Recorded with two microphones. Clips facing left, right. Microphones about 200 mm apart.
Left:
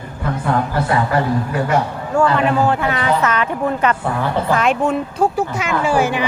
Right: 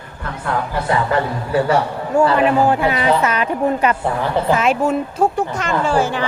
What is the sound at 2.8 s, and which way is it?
Speech, 25° right (ahead or behind).